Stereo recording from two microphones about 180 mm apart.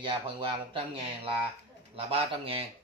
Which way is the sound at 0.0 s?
25° right (ahead or behind).